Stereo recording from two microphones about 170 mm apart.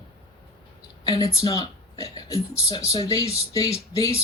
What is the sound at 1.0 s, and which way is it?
Speech, 20° left (ahead or behind).